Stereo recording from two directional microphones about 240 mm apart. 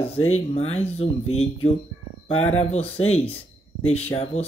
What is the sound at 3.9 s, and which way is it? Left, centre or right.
Speech, left.